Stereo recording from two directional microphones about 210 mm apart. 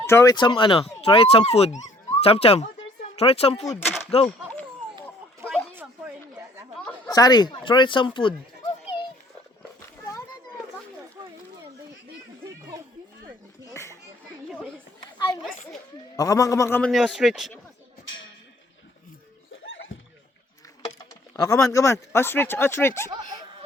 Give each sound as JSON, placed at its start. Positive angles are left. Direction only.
{"t": 0.0, "sound": "speech", "side_deg": 15}
{"t": 3.7, "sound": "speech", "side_deg": 10}
{"t": 7.1, "sound": "speech", "side_deg": 20}
{"t": 16.1, "sound": "speech", "side_deg": 15}
{"t": 16.9, "sound": "speech", "side_deg": -5}
{"t": 19.9, "sound": "rowboat", "side_deg": 70}
{"t": 20.8, "sound": "vehicle", "side_deg": 15}
{"t": 22.1, "sound": "speech", "side_deg": 10}